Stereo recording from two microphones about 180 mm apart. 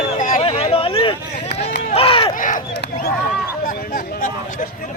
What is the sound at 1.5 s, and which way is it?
Run, 65° left (ahead or behind).